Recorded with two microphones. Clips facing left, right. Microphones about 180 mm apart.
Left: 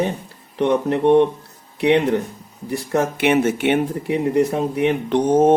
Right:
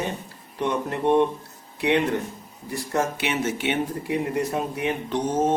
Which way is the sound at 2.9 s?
55° left (ahead or behind).